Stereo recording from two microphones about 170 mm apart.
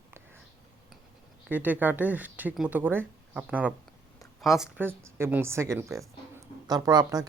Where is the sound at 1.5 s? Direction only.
10° right (ahead or behind).